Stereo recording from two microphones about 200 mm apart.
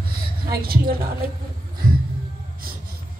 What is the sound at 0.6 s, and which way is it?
Speech, 50° right (ahead or behind).